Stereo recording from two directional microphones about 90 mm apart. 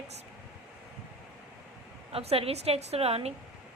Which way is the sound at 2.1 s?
90° right.